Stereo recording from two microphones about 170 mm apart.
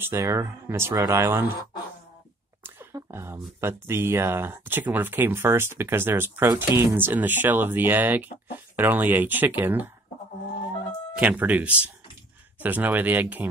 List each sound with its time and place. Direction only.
0.0 s speech: 15° right (ahead or behind)
2.6 s speech: 15° right (ahead or behind)
11.1 s speech: 10° right (ahead or behind)